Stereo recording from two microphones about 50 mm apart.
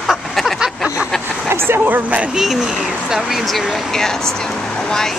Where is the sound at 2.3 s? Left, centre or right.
Centre.